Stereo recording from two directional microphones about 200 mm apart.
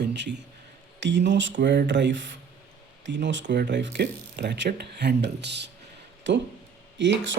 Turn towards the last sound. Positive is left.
turn(degrees=-65)  # may be behind; listen again after turning